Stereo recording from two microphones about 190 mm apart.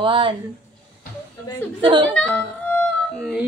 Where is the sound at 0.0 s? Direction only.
25° right (ahead or behind).